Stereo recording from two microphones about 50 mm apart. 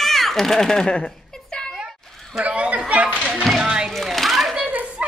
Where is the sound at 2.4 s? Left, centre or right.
Right.